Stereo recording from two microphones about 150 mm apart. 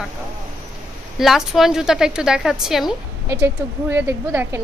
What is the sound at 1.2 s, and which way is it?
A woman's voice, centre (ahead or behind).